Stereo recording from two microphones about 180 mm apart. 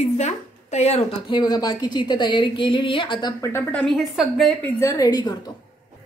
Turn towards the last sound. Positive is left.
turn(degrees=20)  # may be behind; listen again after turning